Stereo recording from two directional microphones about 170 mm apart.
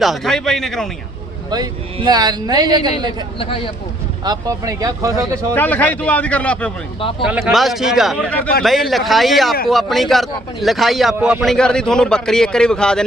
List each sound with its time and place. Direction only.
0.0 s a man's voice: centre (ahead or behind)
1.5 s a man's voice: 25° right (ahead or behind)
3.3 s a man's voice: 30° left (ahead or behind)
4.2 s a man's voice: 20° right (ahead or behind)
5.5 s a man's voice: 10° left (ahead or behind)
7.3 s a man's voice: 5° right (ahead or behind)